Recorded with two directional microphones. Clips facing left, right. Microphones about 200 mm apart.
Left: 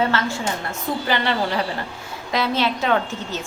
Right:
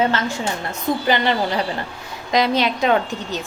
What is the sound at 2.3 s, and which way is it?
A woman's voice, 15° right (ahead or behind).